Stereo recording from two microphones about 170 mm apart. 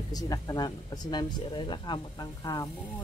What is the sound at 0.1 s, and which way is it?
Speech, 20° left (ahead or behind).